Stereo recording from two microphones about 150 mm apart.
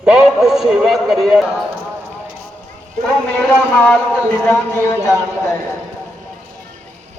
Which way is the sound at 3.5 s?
10° left (ahead or behind).